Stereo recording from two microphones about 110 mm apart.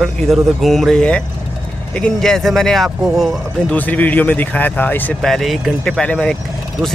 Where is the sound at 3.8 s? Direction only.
15° left (ahead or behind).